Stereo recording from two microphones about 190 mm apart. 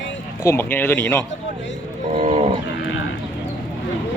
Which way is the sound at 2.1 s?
35° right (ahead or behind).